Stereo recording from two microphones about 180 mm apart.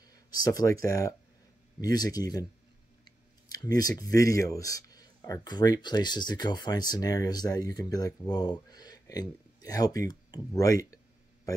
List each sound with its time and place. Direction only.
0.0 s speech: 20° left (ahead or behind)
3.1 s clicking: 20° left (ahead or behind)
4.0 s speech: 20° left (ahead or behind)